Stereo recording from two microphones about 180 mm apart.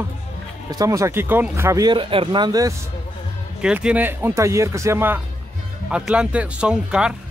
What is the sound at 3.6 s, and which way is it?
A man's voice, 5° right (ahead or behind).